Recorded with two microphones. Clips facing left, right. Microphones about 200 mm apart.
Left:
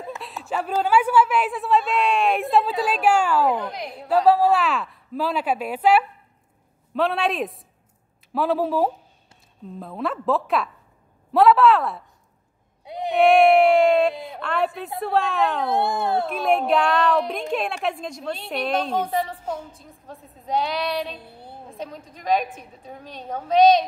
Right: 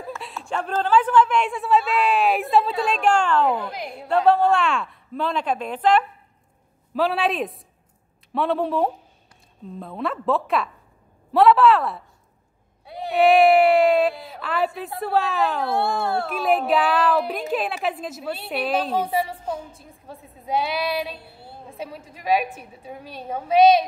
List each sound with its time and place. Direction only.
0.2 s a woman's voice: centre (ahead or behind)
12.8 s a sound: 20° left (ahead or behind)
13.1 s a woman's voice: centre (ahead or behind)
15.6 s a child's voice: 20° left (ahead or behind)
16.3 s a woman's voice: centre (ahead or behind)